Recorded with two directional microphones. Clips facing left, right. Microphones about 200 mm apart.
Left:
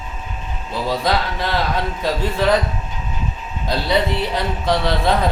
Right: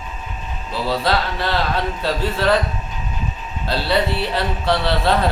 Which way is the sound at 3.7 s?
15° left (ahead or behind).